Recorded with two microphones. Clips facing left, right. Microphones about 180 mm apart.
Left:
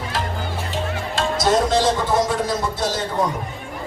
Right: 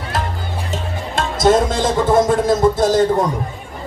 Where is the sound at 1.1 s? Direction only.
50° right (ahead or behind).